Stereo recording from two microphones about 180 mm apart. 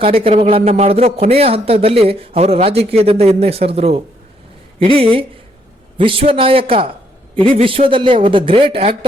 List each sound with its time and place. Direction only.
0.0 s speech: 30° right (ahead or behind)